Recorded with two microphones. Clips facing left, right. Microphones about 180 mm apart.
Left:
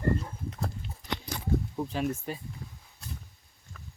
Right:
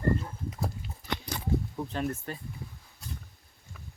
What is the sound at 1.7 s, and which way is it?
Speech, 10° left (ahead or behind).